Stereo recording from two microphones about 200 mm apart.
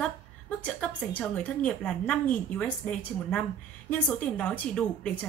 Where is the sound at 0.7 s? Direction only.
5° left (ahead or behind).